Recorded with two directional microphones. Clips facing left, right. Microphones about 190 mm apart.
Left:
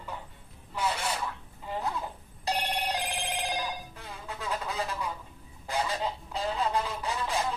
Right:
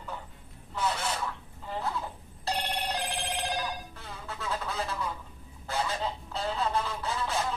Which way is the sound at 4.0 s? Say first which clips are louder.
Even; 15° left (ahead or behind).